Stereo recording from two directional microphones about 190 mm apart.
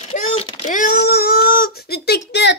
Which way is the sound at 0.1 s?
35° left (ahead or behind).